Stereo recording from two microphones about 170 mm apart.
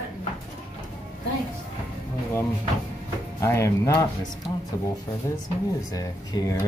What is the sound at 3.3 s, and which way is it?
Speech, 15° left (ahead or behind).